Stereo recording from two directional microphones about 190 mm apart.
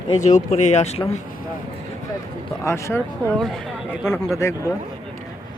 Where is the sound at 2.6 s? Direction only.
15° left (ahead or behind).